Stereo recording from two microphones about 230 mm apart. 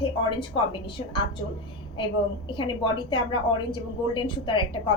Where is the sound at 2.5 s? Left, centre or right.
Left.